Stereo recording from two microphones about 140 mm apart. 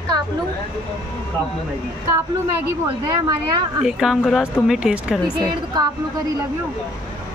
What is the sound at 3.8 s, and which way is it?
Speech, 5° right (ahead or behind).